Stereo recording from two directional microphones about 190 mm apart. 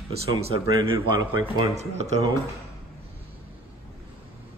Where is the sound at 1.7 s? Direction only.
35° right (ahead or behind).